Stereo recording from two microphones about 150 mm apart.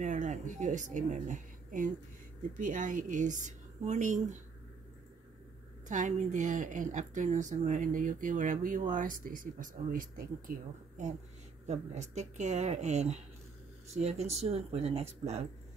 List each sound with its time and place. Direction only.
0.0 s speech: 55° right (ahead or behind)
5.9 s speech: 55° right (ahead or behind)
11.6 s speech: 50° right (ahead or behind)